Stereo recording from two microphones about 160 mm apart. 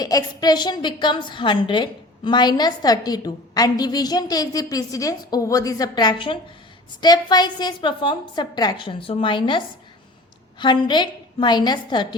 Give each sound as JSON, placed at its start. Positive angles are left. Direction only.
{"t": 0.0, "sound": "a woman's voice", "side_deg": 25}